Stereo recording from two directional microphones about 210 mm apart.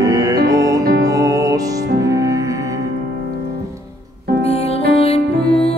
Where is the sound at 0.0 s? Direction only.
15° right (ahead or behind).